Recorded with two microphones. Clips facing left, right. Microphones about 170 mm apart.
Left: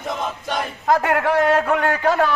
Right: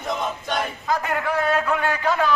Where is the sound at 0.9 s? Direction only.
70° left (ahead or behind).